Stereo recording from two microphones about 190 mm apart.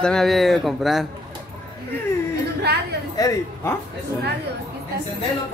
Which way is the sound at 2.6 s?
60° right (ahead or behind).